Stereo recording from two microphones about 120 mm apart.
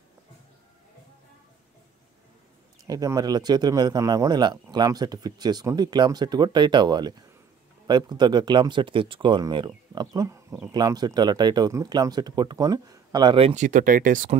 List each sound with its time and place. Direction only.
2.9 s speech: 30° right (ahead or behind)
9.9 s speech: 30° right (ahead or behind)
13.6 s speech: 90° right